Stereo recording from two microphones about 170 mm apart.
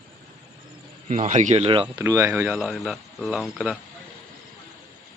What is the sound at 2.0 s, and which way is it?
Speech, 15° right (ahead or behind).